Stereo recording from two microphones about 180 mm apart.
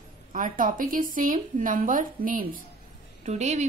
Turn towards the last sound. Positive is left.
turn(degrees=-40)  # may be behind; listen again after turning